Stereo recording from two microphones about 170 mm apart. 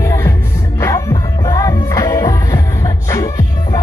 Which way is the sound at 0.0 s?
15° left (ahead or behind).